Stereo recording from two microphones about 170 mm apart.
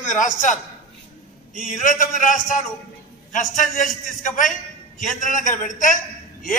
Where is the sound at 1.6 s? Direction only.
50° left (ahead or behind).